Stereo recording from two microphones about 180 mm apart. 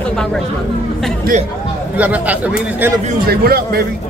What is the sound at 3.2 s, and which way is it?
Speech, 55° right (ahead or behind).